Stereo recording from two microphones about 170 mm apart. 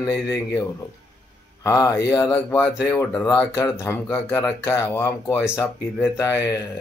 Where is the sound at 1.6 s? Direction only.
20° left (ahead or behind).